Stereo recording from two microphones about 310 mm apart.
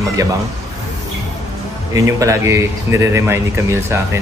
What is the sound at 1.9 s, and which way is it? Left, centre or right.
A man's voice, centre.